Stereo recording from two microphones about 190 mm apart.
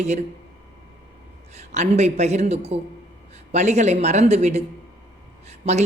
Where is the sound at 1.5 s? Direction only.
35° right (ahead or behind).